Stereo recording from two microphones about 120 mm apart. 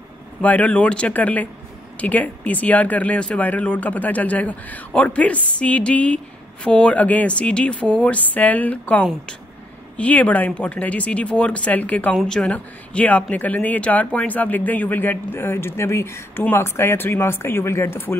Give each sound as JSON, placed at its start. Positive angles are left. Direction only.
{"t": 0.4, "sound": "speech", "side_deg": 10}